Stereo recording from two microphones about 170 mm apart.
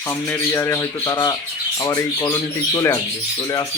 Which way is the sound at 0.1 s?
15° left (ahead or behind).